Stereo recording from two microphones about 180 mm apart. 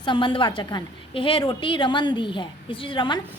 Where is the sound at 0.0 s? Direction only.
25° left (ahead or behind).